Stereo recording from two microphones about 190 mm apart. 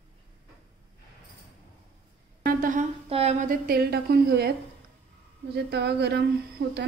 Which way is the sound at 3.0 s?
30° right (ahead or behind).